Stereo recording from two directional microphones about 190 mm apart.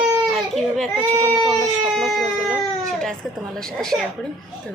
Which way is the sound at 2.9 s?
Centre (ahead or behind).